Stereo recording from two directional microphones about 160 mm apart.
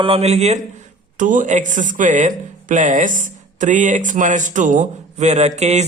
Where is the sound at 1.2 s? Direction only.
55° right (ahead or behind).